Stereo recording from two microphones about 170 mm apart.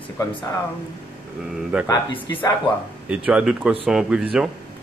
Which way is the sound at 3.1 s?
5° right (ahead or behind).